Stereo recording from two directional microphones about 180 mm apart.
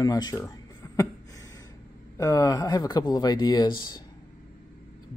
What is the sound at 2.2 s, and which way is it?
Speech, 20° left (ahead or behind).